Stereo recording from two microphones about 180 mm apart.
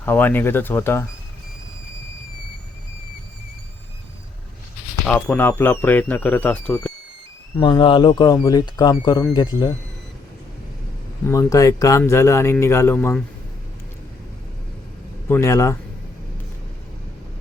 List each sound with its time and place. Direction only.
0.0 s speech: 10° left (ahead or behind)
5.0 s speech: 5° left (ahead or behind)
7.6 s speech: 25° left (ahead or behind)
11.3 s speech: 20° left (ahead or behind)
15.3 s speech: 15° left (ahead or behind)